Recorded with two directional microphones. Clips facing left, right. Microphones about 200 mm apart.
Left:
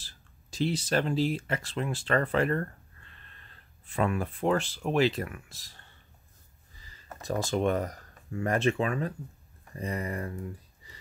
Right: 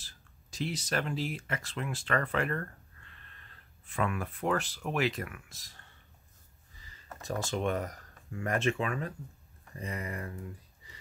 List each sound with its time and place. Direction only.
0.0 s speech: 30° left (ahead or behind)
7.2 s speech: 35° left (ahead or behind)